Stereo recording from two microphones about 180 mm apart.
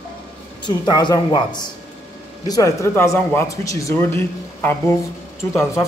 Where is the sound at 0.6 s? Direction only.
25° left (ahead or behind).